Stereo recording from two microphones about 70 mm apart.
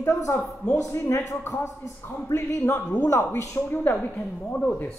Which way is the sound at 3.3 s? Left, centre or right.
Left.